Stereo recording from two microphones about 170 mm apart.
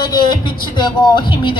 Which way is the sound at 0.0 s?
25° left (ahead or behind).